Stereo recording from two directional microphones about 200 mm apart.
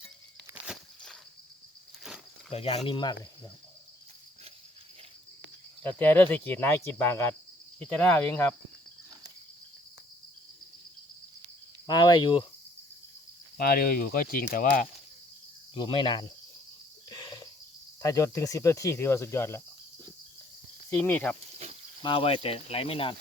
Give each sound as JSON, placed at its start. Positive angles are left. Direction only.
{"t": 2.5, "sound": "speech", "side_deg": 30}
{"t": 6.0, "sound": "speech", "side_deg": 10}
{"t": 11.9, "sound": "speech", "side_deg": 20}
{"t": 13.6, "sound": "speech", "side_deg": 50}
{"t": 15.7, "sound": "speech", "side_deg": 25}
{"t": 17.1, "sound": "a sound", "side_deg": 20}
{"t": 18.0, "sound": "speech", "side_deg": 15}
{"t": 20.9, "sound": "speech", "side_deg": 10}
{"t": 22.0, "sound": "speech", "side_deg": 25}